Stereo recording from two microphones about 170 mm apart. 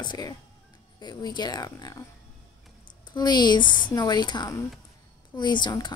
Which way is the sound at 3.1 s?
25° left (ahead or behind).